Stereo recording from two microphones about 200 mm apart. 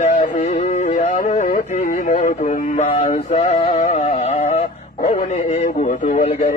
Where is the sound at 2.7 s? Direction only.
35° left (ahead or behind).